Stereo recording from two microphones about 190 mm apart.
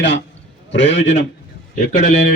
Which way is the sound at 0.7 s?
70° left (ahead or behind).